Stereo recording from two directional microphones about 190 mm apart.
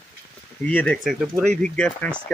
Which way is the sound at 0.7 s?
5° left (ahead or behind).